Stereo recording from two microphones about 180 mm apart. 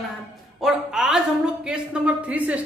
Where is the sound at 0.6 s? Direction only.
Centre (ahead or behind).